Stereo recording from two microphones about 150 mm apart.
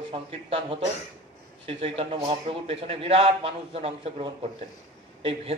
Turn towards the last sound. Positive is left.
turn(degrees=-40)  # may be behind; listen again after turning